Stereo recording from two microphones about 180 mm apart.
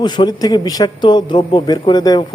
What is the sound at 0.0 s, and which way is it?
A man's voice, 25° left (ahead or behind).